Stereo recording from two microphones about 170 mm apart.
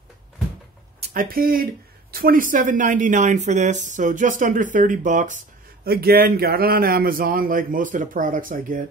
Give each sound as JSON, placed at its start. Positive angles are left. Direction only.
{"t": 1.1, "sound": "a man's voice", "side_deg": -60}
{"t": 5.9, "sound": "a man's voice", "side_deg": -65}